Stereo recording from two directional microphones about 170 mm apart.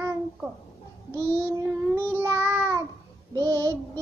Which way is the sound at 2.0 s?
15° right (ahead or behind).